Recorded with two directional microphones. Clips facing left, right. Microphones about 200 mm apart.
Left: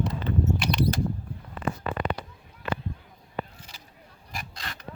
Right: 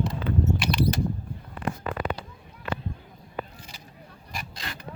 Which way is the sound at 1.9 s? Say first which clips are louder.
Even; 35° right (ahead or behind).